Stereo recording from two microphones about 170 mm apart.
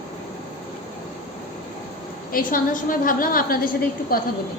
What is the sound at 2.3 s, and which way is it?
A woman's voice, 55° left (ahead or behind).